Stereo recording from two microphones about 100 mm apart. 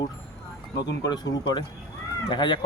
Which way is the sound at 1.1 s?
45° left (ahead or behind).